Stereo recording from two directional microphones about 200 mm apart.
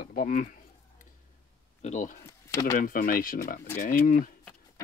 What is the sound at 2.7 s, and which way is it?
Speech, 45° left (ahead or behind).